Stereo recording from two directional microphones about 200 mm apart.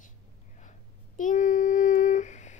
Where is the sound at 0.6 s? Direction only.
40° left (ahead or behind).